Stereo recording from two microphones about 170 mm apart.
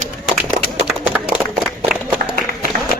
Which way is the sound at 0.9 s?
5° right (ahead or behind).